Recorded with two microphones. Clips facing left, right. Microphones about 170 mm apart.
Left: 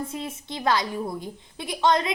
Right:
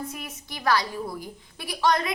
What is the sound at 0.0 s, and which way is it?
A woman's voice, 25° left (ahead or behind).